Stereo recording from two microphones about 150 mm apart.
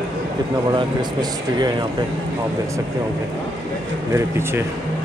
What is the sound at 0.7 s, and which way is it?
Speech, 30° right (ahead or behind).